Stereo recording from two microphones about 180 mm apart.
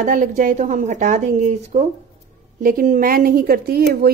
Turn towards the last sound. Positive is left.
turn(degrees=-60)  # may be behind; listen again after turning